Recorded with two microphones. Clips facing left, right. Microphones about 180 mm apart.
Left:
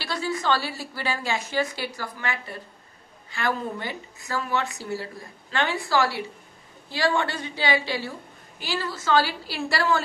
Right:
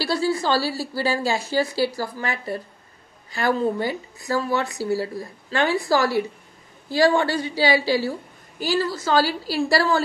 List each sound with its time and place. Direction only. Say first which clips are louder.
0.0 s speech: right 6 dB; 35° right (ahead or behind)